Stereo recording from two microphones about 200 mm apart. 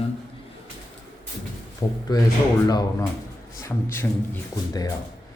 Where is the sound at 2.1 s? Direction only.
20° left (ahead or behind).